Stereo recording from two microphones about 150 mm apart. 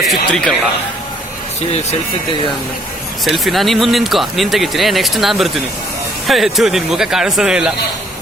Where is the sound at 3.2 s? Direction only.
Centre (ahead or behind).